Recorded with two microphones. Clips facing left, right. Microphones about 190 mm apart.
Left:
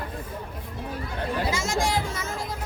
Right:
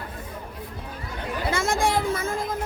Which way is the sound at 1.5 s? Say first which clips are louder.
Right 7 dB; 55° right (ahead or behind).